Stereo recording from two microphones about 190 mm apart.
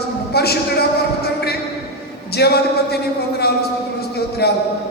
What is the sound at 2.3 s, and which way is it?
A man's voice, 55° left (ahead or behind).